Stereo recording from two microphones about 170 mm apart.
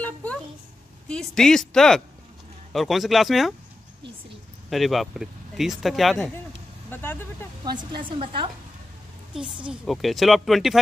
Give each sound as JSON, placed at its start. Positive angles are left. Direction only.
{"t": 0.0, "sound": "a sound", "side_deg": 10}
{"t": 1.0, "sound": "speech", "side_deg": 5}
{"t": 4.6, "sound": "speech", "side_deg": 0}
{"t": 6.9, "sound": "speech", "side_deg": 10}
{"t": 7.6, "sound": "a woman's voice", "side_deg": -25}
{"t": 9.3, "sound": "speech", "side_deg": -5}